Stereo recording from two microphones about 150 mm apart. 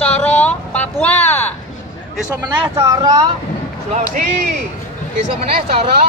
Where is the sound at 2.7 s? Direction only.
20° right (ahead or behind).